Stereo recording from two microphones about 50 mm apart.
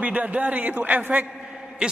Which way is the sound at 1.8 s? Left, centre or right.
Centre.